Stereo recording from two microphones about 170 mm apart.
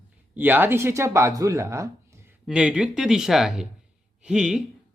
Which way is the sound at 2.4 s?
5° right (ahead or behind).